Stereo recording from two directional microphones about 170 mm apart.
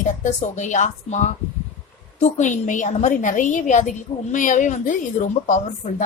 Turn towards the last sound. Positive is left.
turn(degrees=45)  # may be behind; listen again after turning